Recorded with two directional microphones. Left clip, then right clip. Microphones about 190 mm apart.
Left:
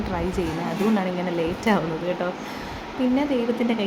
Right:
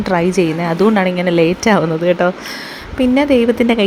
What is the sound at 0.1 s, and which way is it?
Speech, 40° right (ahead or behind).